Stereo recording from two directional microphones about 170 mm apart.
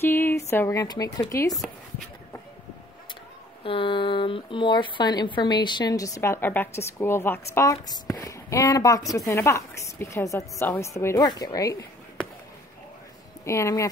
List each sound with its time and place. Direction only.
0.0 s speech: 15° left (ahead or behind)
1.5 s speech: centre (ahead or behind)
3.6 s a woman's voice: 30° left (ahead or behind)
13.5 s a woman's voice: 15° left (ahead or behind)